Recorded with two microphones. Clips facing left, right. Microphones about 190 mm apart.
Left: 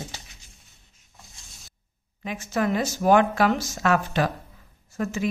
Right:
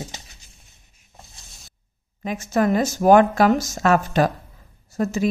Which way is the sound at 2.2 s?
45° right (ahead or behind).